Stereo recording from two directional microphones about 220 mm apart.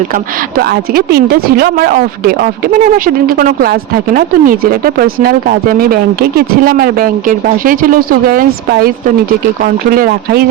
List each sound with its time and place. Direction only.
0.6 s speech: 45° right (ahead or behind)